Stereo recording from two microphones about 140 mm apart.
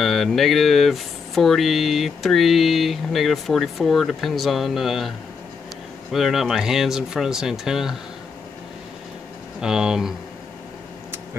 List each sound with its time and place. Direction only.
0.0 s speech: centre (ahead or behind)
6.1 s speech: centre (ahead or behind)
9.6 s speech: 5° right (ahead or behind)